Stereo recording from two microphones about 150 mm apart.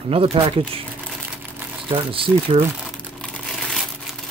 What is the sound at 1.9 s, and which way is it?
Speech, 35° right (ahead or behind).